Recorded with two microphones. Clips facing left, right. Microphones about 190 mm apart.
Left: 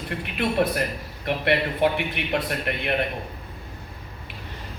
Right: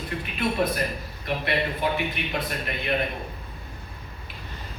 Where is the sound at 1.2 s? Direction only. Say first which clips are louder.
Left 4 dB; 65° left (ahead or behind).